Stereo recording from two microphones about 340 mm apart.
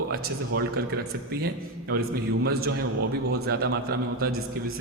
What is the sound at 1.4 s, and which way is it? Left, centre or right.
Speech, right.